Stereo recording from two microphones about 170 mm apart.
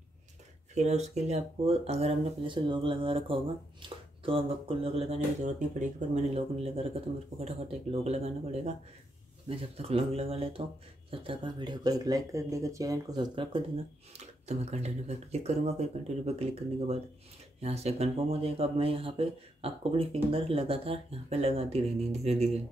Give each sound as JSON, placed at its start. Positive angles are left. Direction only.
{"t": 0.7, "sound": "speech", "side_deg": -40}
{"t": 9.8, "sound": "speech", "side_deg": -35}
{"t": 14.1, "sound": "speech", "side_deg": -40}